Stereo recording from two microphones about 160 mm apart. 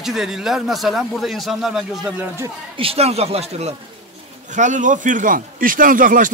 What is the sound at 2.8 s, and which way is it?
Speech, 40° right (ahead or behind).